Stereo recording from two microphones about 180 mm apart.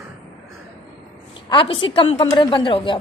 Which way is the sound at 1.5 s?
30° left (ahead or behind).